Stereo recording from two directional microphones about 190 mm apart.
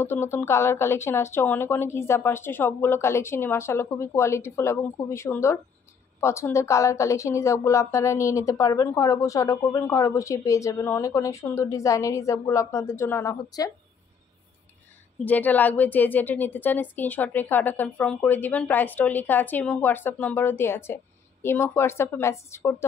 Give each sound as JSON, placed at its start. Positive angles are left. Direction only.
{"t": 0.0, "sound": "a woman's voice", "side_deg": 15}
{"t": 15.2, "sound": "a woman's voice", "side_deg": 10}